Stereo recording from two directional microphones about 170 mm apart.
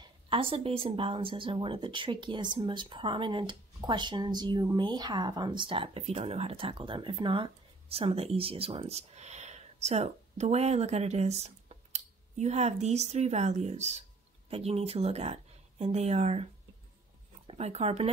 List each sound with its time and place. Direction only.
0.0 s a woman's voice: 30° right (ahead or behind)
17.5 s a woman's voice: 40° right (ahead or behind)